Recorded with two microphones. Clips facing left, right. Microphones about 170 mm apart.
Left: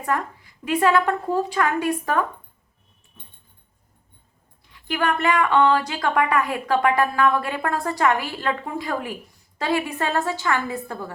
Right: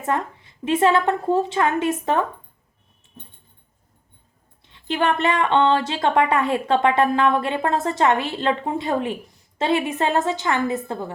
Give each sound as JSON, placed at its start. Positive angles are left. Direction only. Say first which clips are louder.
{"t": 0.0, "sound": "speech", "louder": "right 1 dB", "side_deg": -25}
{"t": 4.6, "sound": "speech", "louder": "right 2 dB", "side_deg": -25}